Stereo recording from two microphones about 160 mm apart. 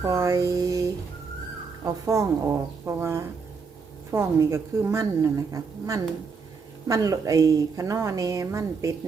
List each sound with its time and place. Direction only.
0.0 s a woman's voice: 15° right (ahead or behind)